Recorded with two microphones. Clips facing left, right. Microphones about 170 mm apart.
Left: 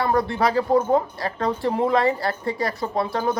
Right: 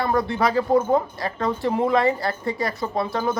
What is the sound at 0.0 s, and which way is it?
Speech, 20° right (ahead or behind).